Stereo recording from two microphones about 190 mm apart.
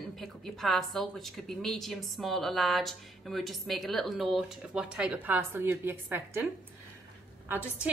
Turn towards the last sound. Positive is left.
turn(degrees=-5)  # may be behind; listen again after turning